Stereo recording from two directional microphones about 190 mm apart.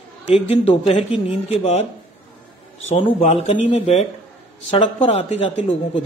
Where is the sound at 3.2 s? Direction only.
35° left (ahead or behind).